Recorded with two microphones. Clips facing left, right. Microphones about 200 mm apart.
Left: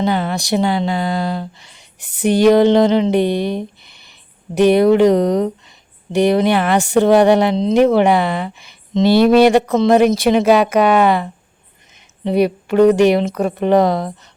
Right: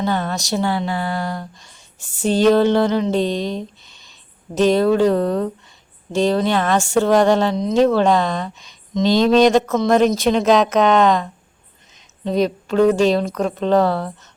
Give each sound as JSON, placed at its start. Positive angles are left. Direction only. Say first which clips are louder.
{"t": 0.0, "sound": "a woman's voice", "louder": "left 3 dB", "side_deg": 10}
{"t": 7.5, "sound": "speech", "louder": "left 4 dB", "side_deg": 30}
{"t": 7.9, "sound": "a woman's voice", "louder": "left 3 dB", "side_deg": 10}